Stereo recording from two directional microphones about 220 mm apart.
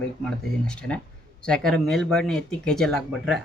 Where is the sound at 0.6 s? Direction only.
5° left (ahead or behind).